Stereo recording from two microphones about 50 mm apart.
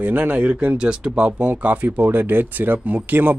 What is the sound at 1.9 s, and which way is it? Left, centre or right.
Speech, right.